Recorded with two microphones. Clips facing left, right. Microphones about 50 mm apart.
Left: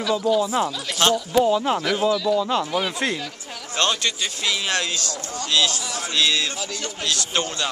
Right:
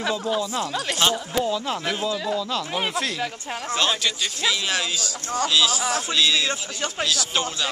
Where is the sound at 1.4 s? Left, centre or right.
Centre.